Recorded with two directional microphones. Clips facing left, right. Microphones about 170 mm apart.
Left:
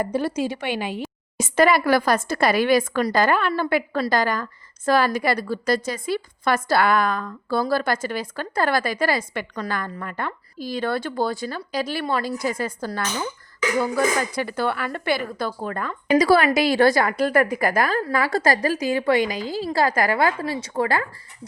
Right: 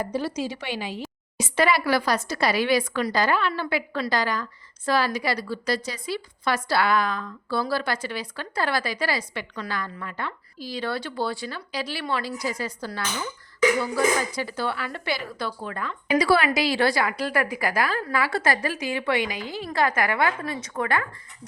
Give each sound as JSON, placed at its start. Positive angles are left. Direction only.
{"t": 0.0, "sound": "a woman's voice", "side_deg": 55}